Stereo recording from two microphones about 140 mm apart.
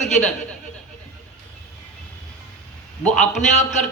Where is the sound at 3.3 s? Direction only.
55° left (ahead or behind).